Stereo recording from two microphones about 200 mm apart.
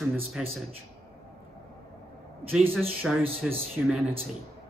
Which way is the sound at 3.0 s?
Centre (ahead or behind).